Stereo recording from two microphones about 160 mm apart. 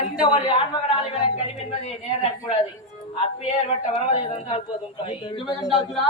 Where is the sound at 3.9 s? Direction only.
40° left (ahead or behind).